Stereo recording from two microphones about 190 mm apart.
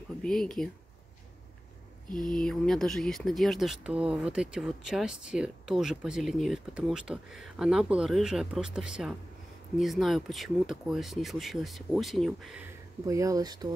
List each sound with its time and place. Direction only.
0.2 s speech: 5° left (ahead or behind)
2.2 s speech: 5° left (ahead or behind)
13.0 s speech: 15° right (ahead or behind)